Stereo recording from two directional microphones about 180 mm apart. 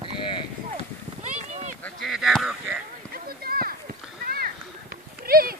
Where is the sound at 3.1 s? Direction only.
55° right (ahead or behind).